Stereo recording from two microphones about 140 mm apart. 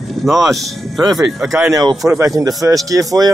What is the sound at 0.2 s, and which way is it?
Speech, centre (ahead or behind).